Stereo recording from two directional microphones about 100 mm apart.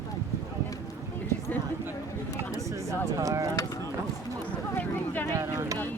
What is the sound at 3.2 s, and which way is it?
Speech, 35° right (ahead or behind).